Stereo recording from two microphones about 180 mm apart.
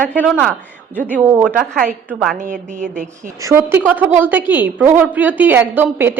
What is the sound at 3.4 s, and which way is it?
A woman's voice, 15° right (ahead or behind).